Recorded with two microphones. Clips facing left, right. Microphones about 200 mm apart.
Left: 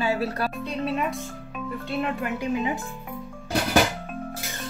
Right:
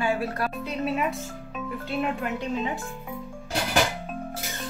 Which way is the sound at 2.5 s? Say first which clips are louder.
Left 2 dB; 15° left (ahead or behind).